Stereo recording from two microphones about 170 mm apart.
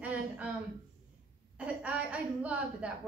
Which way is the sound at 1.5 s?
10° right (ahead or behind).